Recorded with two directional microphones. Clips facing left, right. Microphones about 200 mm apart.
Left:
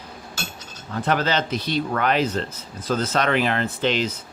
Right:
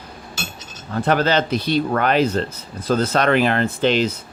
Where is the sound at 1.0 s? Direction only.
45° right (ahead or behind).